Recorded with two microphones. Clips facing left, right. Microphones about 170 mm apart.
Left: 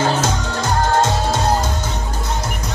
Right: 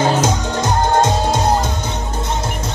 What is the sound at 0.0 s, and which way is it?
Music, 20° right (ahead or behind).